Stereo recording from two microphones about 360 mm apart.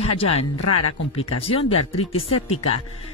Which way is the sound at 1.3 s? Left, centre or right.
Centre.